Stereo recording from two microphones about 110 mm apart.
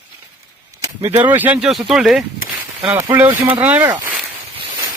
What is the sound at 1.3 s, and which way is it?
Speech, 15° right (ahead or behind).